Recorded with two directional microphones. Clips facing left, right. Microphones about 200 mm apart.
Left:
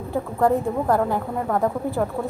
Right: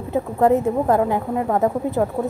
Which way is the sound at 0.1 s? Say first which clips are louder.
Right 3 dB; 20° right (ahead or behind).